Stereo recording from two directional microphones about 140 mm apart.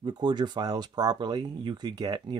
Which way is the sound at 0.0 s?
30° right (ahead or behind).